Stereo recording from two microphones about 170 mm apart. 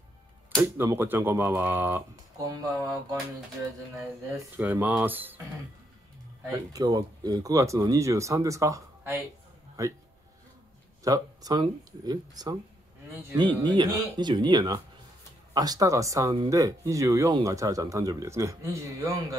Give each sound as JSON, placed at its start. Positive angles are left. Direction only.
{"t": 0.6, "sound": "speech", "side_deg": -15}
{"t": 4.6, "sound": "speech", "side_deg": -15}
{"t": 6.4, "sound": "speech", "side_deg": -20}
{"t": 11.1, "sound": "speech", "side_deg": -20}